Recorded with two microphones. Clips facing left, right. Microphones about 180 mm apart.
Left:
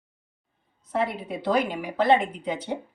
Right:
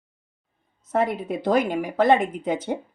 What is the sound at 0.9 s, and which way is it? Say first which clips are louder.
A woman's voice: right 4 dB; 45° right (ahead or behind).